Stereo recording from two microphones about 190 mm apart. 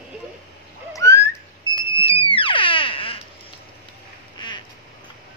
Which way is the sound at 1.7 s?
25° left (ahead or behind).